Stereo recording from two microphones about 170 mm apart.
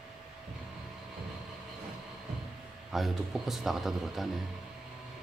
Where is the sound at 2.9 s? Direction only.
Centre (ahead or behind).